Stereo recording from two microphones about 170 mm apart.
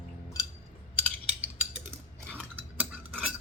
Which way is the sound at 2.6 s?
10° right (ahead or behind).